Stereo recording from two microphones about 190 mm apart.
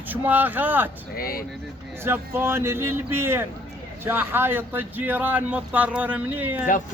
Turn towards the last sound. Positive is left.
turn(degrees=-10)  # may be behind; listen again after turning